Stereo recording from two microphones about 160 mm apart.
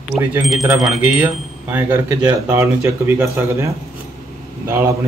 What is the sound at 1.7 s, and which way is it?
Speech, 15° right (ahead or behind).